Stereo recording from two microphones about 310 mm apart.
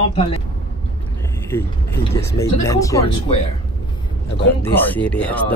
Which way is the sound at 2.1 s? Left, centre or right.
Centre.